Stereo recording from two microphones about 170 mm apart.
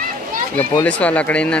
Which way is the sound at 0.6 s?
10° left (ahead or behind).